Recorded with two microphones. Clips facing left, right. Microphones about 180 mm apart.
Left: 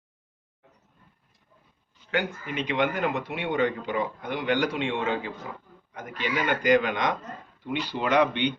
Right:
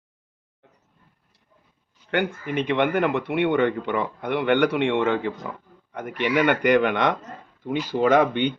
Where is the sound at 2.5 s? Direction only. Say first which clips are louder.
Right 4 dB; 55° right (ahead or behind).